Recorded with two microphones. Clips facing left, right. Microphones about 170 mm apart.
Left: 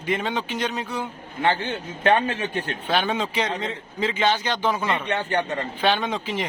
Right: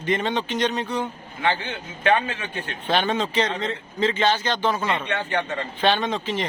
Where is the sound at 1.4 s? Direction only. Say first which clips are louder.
Left 2 dB; 40° left (ahead or behind).